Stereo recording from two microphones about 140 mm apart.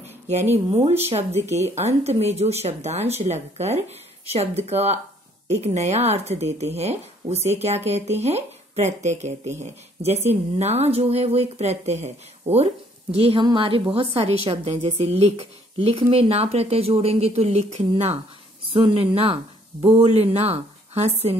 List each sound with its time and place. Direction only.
0.3 s a woman's voice: 50° right (ahead or behind)